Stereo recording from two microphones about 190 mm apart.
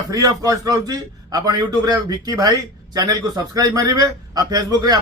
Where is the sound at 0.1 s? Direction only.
20° right (ahead or behind).